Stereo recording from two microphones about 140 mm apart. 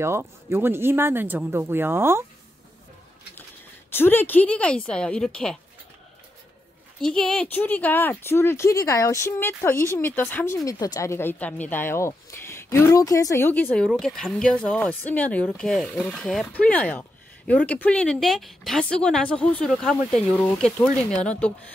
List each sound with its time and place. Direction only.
0.0 s speech: 15° right (ahead or behind)
3.9 s speech: 15° left (ahead or behind)
7.0 s speech: 5° left (ahead or behind)
13.8 s speech: 5° left (ahead or behind)